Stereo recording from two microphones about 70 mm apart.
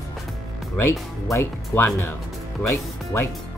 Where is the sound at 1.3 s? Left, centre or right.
Left.